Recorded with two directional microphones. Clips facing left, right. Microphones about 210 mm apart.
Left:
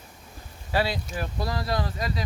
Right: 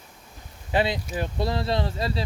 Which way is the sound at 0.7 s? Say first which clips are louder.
Right 2 dB; 20° right (ahead or behind).